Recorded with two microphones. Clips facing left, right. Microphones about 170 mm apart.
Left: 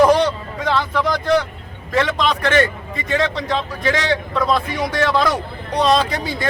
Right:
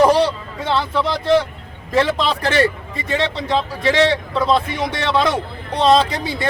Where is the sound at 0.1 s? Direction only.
30° right (ahead or behind).